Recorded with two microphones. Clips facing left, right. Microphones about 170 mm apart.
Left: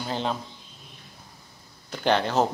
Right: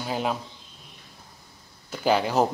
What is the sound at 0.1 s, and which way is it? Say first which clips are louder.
Speech: right 2 dB; 10° right (ahead or behind).